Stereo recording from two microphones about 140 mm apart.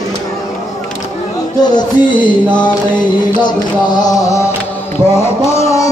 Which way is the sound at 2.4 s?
10° left (ahead or behind).